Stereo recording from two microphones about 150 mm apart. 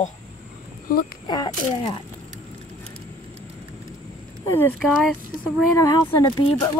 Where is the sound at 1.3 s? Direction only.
30° left (ahead or behind).